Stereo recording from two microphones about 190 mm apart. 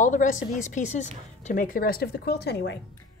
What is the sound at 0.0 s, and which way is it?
Speech, 40° left (ahead or behind).